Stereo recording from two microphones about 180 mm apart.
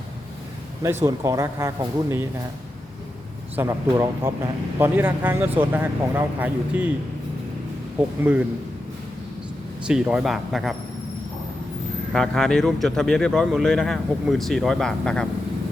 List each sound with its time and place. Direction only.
1.0 s speech: 20° right (ahead or behind)
3.5 s speech: 15° right (ahead or behind)
8.2 s speech: 10° right (ahead or behind)
9.8 s speech: 5° right (ahead or behind)
12.1 s speech: 5° left (ahead or behind)